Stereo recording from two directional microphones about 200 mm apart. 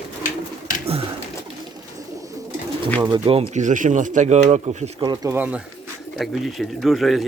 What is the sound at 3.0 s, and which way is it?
Speech, 25° right (ahead or behind).